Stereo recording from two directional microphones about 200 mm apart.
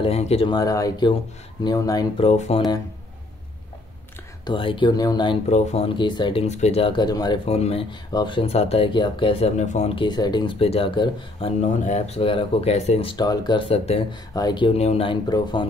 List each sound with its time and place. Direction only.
0.0 s speech: 30° left (ahead or behind)
2.2 s speech: 30° left (ahead or behind)
4.5 s speech: 25° left (ahead or behind)
5.5 s speech: 30° left (ahead or behind)